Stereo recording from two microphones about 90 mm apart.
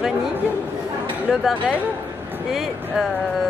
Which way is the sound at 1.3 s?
10° right (ahead or behind).